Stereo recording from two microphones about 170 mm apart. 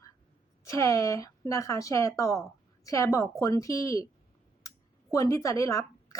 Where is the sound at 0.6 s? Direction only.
20° left (ahead or behind).